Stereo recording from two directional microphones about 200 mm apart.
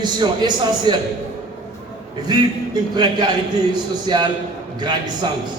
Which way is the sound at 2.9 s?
20° right (ahead or behind).